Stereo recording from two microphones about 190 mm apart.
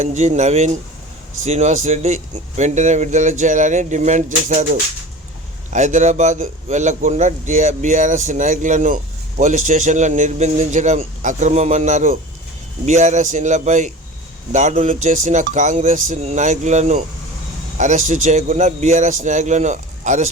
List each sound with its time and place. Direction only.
0.0 s speech: 40° right (ahead or behind)